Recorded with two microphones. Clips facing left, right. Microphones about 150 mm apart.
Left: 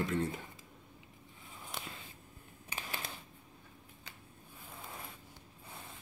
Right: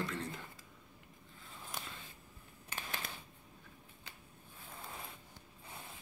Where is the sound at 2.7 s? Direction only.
10° left (ahead or behind).